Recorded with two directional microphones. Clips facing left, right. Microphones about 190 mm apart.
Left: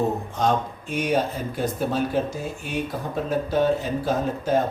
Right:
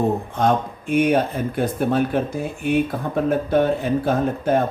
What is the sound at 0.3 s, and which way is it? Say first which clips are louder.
Speech: right 3 dB; 55° right (ahead or behind).